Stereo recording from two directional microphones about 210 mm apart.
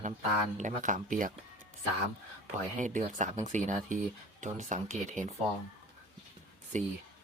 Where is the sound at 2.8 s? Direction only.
35° right (ahead or behind).